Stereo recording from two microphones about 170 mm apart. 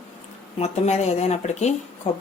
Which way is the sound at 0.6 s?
40° left (ahead or behind).